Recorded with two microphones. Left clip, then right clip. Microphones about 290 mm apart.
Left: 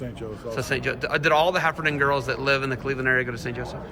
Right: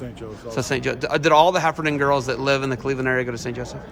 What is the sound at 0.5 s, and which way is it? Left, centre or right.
Speech, centre.